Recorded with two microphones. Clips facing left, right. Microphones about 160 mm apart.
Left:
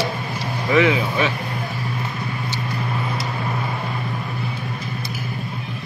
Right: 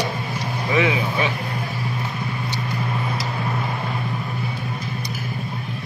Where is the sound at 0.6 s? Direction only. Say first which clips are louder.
Left 3 dB; 20° right (ahead or behind).